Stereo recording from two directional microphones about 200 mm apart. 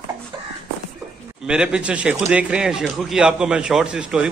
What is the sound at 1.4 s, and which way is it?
A man's voice, 5° right (ahead or behind).